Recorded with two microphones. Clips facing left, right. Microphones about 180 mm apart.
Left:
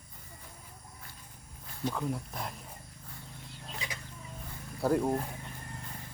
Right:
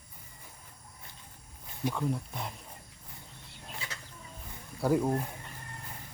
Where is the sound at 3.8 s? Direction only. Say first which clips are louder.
Left 3 dB; 15° left (ahead or behind).